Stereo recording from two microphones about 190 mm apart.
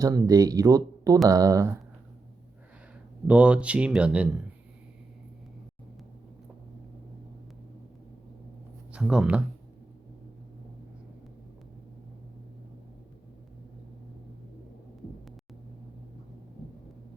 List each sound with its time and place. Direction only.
0.0 s speech: 20° right (ahead or behind)
3.2 s speech: 5° right (ahead or behind)
8.9 s speech: 5° right (ahead or behind)